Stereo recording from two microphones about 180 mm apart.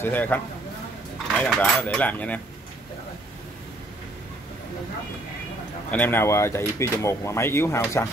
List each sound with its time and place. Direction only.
0.0 s speech: 10° left (ahead or behind)
1.4 s speech: 5° left (ahead or behind)
5.9 s speech: 10° left (ahead or behind)